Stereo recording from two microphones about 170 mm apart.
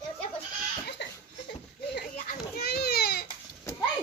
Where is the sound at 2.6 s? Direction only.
70° left (ahead or behind).